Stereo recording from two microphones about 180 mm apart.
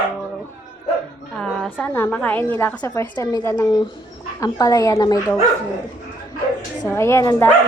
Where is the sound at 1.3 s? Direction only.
5° left (ahead or behind); by 5.4 s 20° left (ahead or behind).